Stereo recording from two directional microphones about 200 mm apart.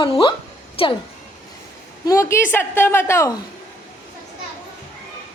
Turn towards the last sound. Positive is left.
turn(degrees=15)  # may be behind; listen again after turning